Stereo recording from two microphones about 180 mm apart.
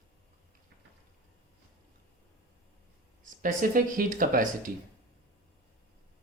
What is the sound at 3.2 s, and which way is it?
Speech, 45° right (ahead or behind).